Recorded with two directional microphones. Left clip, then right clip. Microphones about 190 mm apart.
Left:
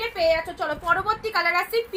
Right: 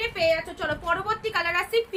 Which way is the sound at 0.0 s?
15° right (ahead or behind).